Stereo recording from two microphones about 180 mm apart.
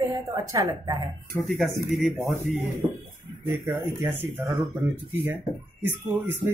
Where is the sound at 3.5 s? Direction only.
10° right (ahead or behind).